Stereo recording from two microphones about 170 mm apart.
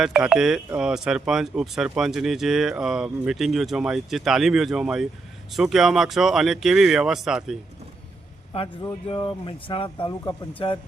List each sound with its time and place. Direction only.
0.0 s speech: 5° right (ahead or behind)
9.0 s speech: 30° left (ahead or behind)